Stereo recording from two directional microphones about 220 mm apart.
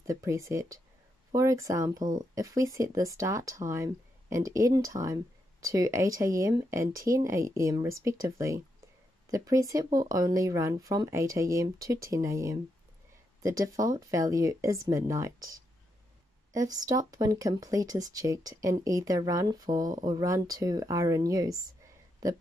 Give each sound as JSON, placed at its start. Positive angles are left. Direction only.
{"t": 0.0, "sound": "speech", "side_deg": -15}